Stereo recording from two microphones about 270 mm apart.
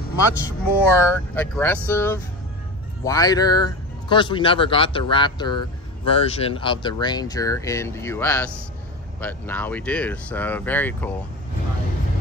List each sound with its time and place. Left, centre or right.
0.1 s speech: left
1.0 s speech: centre